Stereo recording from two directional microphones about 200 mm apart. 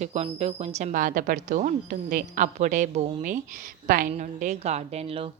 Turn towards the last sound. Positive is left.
turn(degrees=-30)  # may be behind; listen again after turning